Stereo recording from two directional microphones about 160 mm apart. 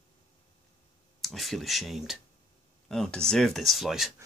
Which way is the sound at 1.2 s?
Centre (ahead or behind).